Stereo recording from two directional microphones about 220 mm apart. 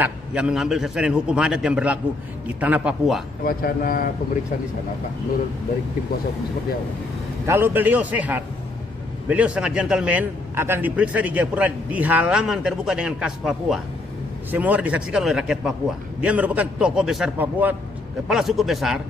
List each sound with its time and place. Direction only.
0.0 s a man's voice: 5° right (ahead or behind)
3.4 s speech: 40° left (ahead or behind)
7.4 s a man's voice: 10° right (ahead or behind)